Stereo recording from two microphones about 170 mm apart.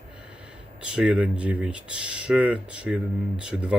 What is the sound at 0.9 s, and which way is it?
Speech, 5° right (ahead or behind).